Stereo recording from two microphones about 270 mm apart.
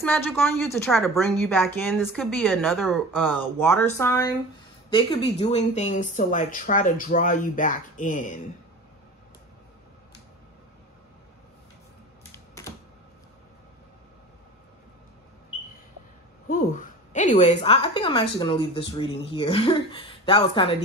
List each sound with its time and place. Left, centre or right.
0.0 s a woman's voice: centre; by 8.4 s left
16.4 s a woman's voice: left